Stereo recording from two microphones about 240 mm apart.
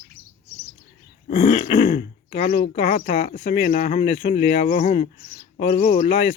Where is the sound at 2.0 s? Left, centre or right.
Left.